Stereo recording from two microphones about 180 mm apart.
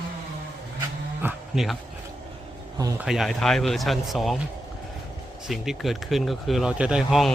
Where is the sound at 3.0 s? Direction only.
Centre (ahead or behind).